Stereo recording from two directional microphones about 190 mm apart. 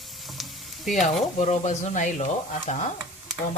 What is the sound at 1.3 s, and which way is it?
Speech, 35° left (ahead or behind).